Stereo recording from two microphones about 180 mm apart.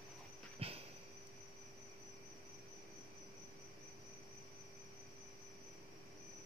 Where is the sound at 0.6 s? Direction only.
30° right (ahead or behind).